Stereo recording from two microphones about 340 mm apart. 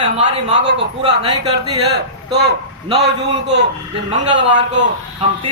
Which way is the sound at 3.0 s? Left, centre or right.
Right.